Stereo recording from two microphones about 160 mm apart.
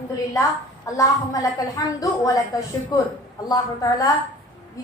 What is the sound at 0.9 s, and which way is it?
A woman's voice, 20° left (ahead or behind).